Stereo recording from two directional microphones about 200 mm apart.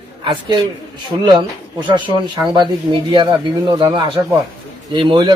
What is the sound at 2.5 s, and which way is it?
Speech, 25° right (ahead or behind).